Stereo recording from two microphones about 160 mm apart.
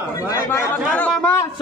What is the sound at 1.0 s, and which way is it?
Speech, 10° left (ahead or behind).